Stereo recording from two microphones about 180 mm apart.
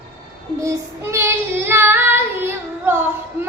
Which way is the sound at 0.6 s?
15° right (ahead or behind).